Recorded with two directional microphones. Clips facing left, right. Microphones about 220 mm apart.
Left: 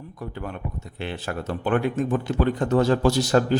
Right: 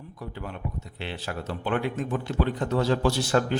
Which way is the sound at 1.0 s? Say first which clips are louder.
Left 4 dB; 50° left (ahead or behind).